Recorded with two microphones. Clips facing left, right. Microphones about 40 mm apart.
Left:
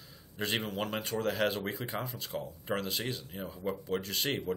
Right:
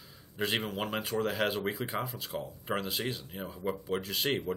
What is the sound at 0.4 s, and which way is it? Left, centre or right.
Speech, centre.